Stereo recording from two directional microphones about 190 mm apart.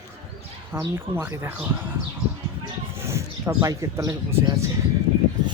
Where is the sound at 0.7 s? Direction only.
10° right (ahead or behind).